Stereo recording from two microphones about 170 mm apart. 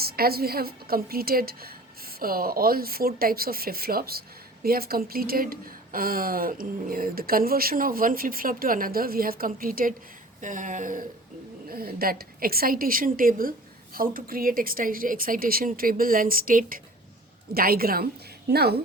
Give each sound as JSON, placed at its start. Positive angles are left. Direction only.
{"t": 0.0, "sound": "a woman's voice", "side_deg": -65}
{"t": 11.7, "sound": "a woman's voice", "side_deg": -60}